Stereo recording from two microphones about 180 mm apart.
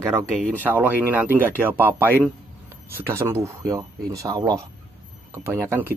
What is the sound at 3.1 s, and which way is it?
Speech, 15° right (ahead or behind).